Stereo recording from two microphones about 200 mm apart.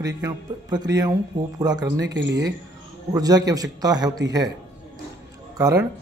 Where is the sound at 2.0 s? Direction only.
65° right (ahead or behind).